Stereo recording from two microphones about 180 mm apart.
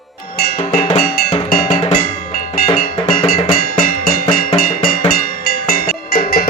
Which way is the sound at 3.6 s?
55° left (ahead or behind).